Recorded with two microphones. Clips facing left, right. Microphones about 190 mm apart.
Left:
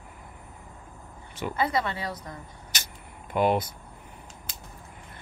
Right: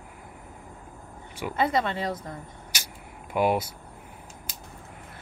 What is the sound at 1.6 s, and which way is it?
Speech, 25° right (ahead or behind).